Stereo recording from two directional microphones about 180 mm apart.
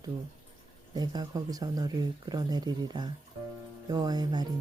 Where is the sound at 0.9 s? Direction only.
20° right (ahead or behind).